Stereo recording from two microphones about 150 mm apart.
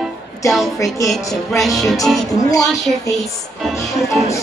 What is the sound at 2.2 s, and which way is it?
Music, 25° left (ahead or behind).